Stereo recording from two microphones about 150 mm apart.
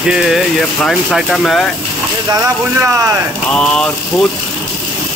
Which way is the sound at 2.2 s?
25° right (ahead or behind).